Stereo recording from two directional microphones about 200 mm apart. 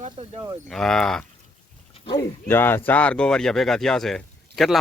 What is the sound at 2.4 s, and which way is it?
A man's voice, 10° left (ahead or behind).